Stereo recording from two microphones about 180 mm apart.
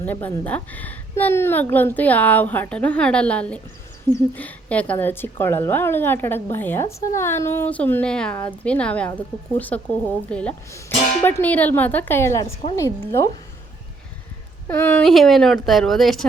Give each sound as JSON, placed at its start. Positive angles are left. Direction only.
{"t": 0.0, "sound": "a woman's voice", "side_deg": 10}
{"t": 14.7, "sound": "speech", "side_deg": 10}